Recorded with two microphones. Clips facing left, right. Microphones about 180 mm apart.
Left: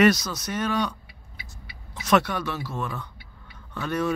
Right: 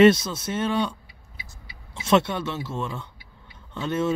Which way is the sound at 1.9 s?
25° right (ahead or behind).